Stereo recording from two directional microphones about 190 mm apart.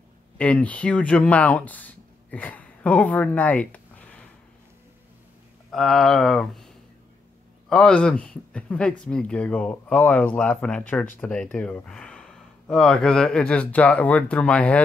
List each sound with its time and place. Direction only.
0.4 s speech: 5° left (ahead or behind)
5.7 s speech: centre (ahead or behind)
7.7 s speech: 5° left (ahead or behind)